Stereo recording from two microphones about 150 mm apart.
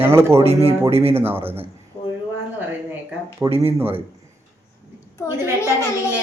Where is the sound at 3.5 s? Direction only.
40° right (ahead or behind).